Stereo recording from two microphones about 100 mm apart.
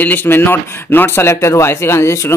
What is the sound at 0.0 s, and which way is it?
Speech, 20° left (ahead or behind).